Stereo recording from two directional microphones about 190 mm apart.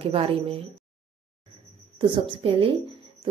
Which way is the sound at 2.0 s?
30° right (ahead or behind).